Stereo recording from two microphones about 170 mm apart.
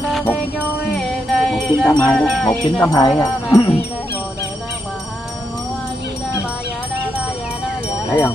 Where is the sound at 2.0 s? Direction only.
5° left (ahead or behind).